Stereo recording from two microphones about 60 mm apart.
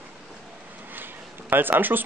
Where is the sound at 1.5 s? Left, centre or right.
Right.